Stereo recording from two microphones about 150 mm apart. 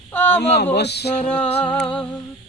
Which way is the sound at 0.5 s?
90° left.